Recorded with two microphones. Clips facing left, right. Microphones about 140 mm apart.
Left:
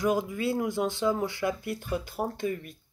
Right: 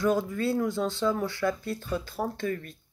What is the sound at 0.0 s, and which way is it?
Speech, 15° left (ahead or behind).